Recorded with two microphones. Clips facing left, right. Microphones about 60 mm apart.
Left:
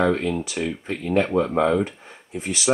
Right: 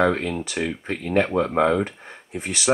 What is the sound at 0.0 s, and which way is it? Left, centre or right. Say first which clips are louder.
Speech: even; centre.